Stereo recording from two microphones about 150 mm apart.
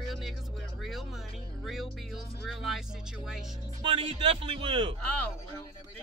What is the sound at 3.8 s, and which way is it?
A man's voice, 35° right (ahead or behind).